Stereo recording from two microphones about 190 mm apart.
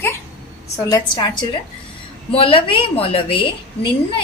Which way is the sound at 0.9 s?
20° left (ahead or behind).